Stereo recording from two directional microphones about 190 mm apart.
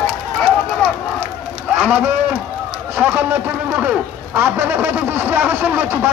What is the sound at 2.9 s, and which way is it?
A man's voice, 10° right (ahead or behind).